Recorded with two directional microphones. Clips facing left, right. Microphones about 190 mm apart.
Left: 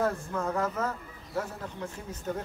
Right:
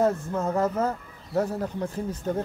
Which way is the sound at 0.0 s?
25° right (ahead or behind).